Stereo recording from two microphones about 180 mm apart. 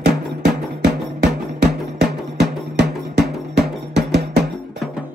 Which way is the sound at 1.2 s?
65° right (ahead or behind).